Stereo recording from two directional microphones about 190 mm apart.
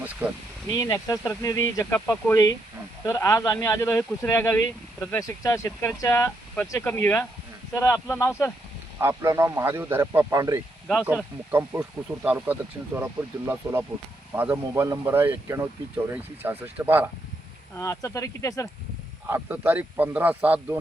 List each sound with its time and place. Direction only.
0.2 s speech: 5° right (ahead or behind)
0.7 s speech: 15° left (ahead or behind)
9.0 s speech: 15° right (ahead or behind)
11.0 s speech: 5° right (ahead or behind)
17.7 s speech: 15° left (ahead or behind)
19.3 s speech: 10° right (ahead or behind)